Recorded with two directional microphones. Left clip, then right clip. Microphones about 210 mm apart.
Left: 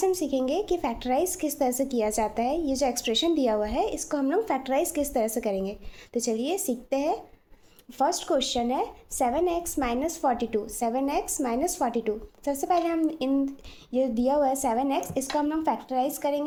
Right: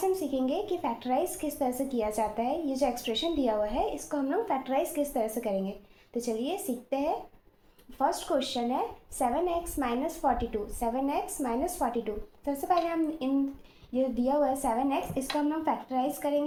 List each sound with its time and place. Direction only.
0.0 s speech: 55° left (ahead or behind)